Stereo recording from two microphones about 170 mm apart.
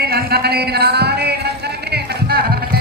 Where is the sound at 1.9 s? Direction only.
70° right (ahead or behind).